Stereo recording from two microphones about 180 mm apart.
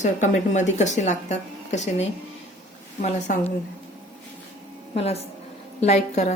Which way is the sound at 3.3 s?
50° left (ahead or behind).